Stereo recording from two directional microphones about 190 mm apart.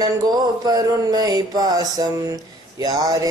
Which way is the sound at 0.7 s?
20° right (ahead or behind).